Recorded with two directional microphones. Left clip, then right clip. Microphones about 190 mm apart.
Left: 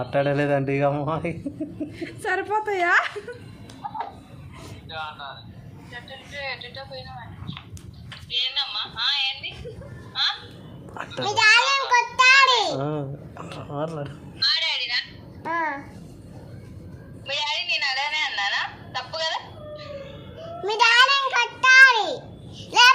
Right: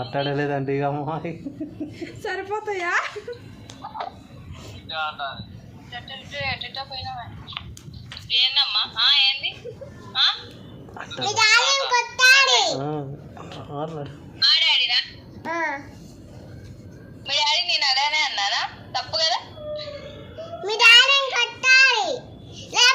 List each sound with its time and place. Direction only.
0.0 s speech: 15° left (ahead or behind)
2.0 s a woman's voice: 35° left (ahead or behind)
3.8 s music: 30° right (ahead or behind)
4.9 s speech: 30° right (ahead or behind)
10.1 s a sound: 35° right (ahead or behind)
10.9 s a child's voice: 15° left (ahead or behind)
12.8 s speech: 10° left (ahead or behind)
14.3 s a woman's voice: 35° right (ahead or behind)
15.4 s a child's voice: 20° left (ahead or behind)
17.2 s a woman's voice: 35° right (ahead or behind)
20.4 s child singing: 25° left (ahead or behind)